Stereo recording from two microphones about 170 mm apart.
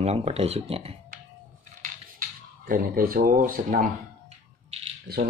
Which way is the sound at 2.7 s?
60° right (ahead or behind).